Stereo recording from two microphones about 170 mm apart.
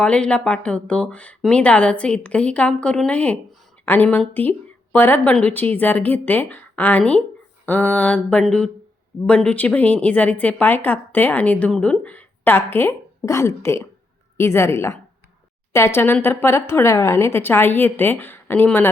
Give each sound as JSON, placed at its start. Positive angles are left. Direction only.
{"t": 0.0, "sound": "a woman's voice", "side_deg": 5}